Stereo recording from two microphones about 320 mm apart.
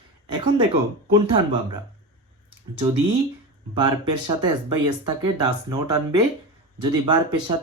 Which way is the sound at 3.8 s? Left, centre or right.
Centre.